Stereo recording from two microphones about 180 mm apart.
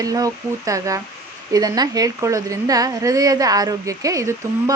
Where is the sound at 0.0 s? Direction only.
20° right (ahead or behind).